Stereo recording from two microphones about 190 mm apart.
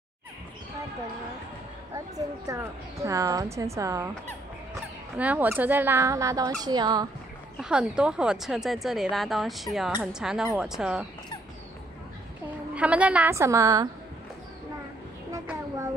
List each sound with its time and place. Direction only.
2.0 s speech: 20° right (ahead or behind)
5.1 s speech: 10° right (ahead or behind)
7.5 s speech: 5° right (ahead or behind)
12.7 s speech: 5° right (ahead or behind)